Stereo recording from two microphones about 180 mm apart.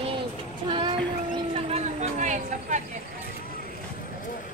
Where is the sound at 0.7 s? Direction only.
25° right (ahead or behind).